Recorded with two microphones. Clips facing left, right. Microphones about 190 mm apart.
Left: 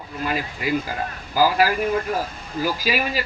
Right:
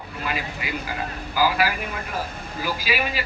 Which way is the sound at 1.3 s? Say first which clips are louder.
Left 4 dB; 40° left (ahead or behind).